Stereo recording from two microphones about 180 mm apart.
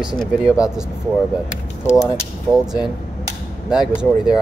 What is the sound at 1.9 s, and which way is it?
Speech, 15° left (ahead or behind).